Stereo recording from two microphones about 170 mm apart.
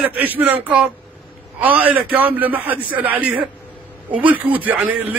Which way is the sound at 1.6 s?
10° right (ahead or behind).